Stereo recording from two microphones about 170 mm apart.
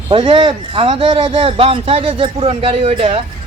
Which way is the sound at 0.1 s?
30° right (ahead or behind).